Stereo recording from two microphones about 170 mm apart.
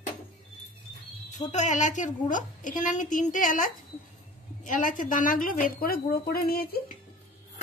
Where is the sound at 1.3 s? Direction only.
45° left (ahead or behind); by 6.6 s 60° left (ahead or behind).